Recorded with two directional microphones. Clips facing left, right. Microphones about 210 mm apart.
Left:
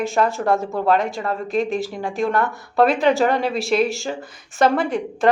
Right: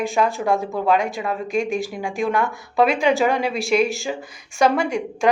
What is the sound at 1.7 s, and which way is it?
Speech, 15° right (ahead or behind).